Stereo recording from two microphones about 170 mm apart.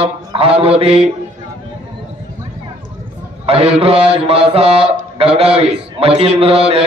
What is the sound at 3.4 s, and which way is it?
Mantra, 35° right (ahead or behind).